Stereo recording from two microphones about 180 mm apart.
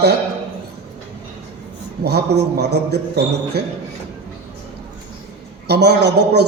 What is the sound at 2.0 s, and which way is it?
A man's voice, 65° right (ahead or behind).